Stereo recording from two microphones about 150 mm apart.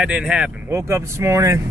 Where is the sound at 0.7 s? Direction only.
20° right (ahead or behind).